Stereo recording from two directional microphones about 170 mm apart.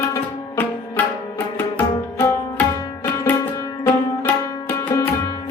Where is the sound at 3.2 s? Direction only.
10° left (ahead or behind).